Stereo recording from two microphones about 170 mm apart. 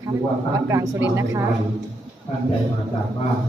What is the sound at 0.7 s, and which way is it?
Speech, 15° right (ahead or behind).